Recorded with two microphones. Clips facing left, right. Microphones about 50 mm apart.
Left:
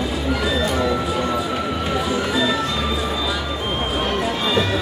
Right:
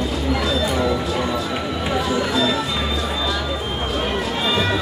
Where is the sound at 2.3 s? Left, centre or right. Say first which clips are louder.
Left 1 dB; centre.